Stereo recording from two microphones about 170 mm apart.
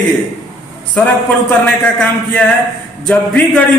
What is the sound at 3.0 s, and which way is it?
Speech, 10° left (ahead or behind).